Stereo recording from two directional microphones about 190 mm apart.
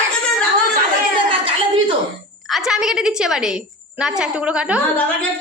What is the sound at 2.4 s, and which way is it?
A woman's voice, centre (ahead or behind).